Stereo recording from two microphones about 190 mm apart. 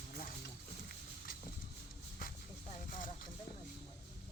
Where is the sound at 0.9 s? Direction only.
50° left (ahead or behind).